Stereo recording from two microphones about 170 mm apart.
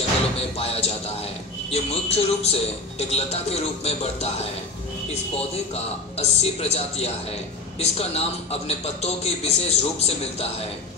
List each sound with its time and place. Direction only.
0.4 s speech: 35° left (ahead or behind)